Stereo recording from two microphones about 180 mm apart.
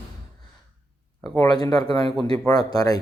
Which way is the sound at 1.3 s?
25° left (ahead or behind).